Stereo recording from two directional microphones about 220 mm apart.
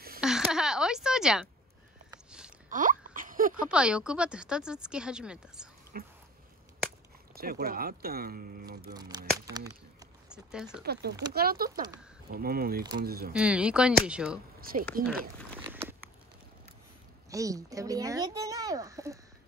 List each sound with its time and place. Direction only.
0.2 s a sound: centre (ahead or behind)
2.7 s a sound: 35° right (ahead or behind)
3.6 s speech: 5° right (ahead or behind)
5.9 s a sound: 40° right (ahead or behind)
7.3 s speech: 45° right (ahead or behind)
10.3 s speech: 5° right (ahead or behind)
10.8 s speech: 45° right (ahead or behind)
13.3 s speech: 5° right (ahead or behind)
14.6 s speech: 40° right (ahead or behind)
17.3 s speech: 15° right (ahead or behind)